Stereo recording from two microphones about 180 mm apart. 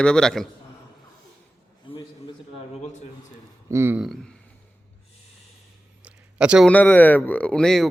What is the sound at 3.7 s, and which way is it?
Speech, 15° right (ahead or behind).